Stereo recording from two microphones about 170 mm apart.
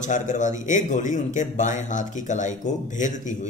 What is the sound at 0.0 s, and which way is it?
A man's voice, 45° left (ahead or behind).